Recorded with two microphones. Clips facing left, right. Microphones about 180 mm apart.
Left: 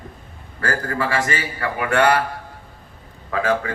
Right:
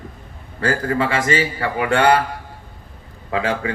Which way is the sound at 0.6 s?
20° right (ahead or behind).